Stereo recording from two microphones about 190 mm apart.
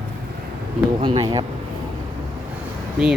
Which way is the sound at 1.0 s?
25° right (ahead or behind).